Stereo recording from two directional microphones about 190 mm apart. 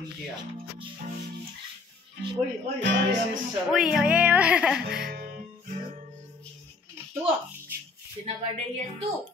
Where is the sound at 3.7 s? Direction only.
5° right (ahead or behind).